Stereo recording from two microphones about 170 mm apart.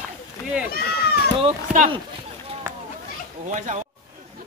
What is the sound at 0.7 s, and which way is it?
Speech, 65° left (ahead or behind).